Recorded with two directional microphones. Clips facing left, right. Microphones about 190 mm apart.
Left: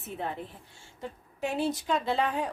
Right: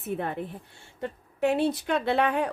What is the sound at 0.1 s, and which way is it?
A woman's voice, 55° right (ahead or behind).